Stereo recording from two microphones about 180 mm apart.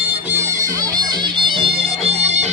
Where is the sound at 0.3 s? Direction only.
15° right (ahead or behind).